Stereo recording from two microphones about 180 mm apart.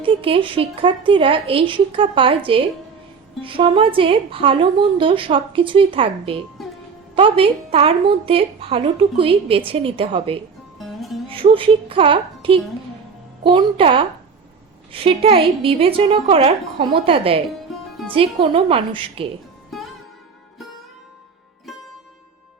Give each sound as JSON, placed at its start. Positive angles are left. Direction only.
{"t": 0.0, "sound": "a woman's voice", "side_deg": -30}
{"t": 10.8, "sound": "music", "side_deg": 0}
{"t": 11.3, "sound": "a woman's voice", "side_deg": -30}
{"t": 19.7, "sound": "music", "side_deg": 0}
{"t": 21.7, "sound": "music", "side_deg": 0}